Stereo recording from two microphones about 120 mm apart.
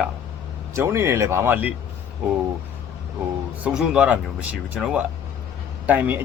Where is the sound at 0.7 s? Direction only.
25° right (ahead or behind).